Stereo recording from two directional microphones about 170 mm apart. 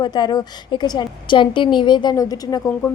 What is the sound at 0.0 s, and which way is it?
A woman's voice, 25° left (ahead or behind).